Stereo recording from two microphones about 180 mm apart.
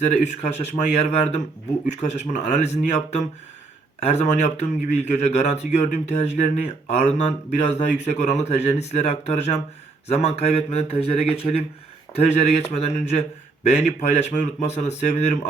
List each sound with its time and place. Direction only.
0.0 s a man's voice: 40° left (ahead or behind)